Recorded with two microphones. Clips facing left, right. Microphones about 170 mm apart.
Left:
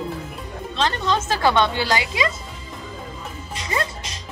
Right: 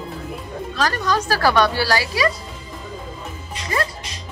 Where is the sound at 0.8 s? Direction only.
25° left (ahead or behind).